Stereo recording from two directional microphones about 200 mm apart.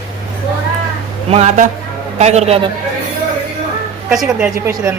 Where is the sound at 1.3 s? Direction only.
35° right (ahead or behind).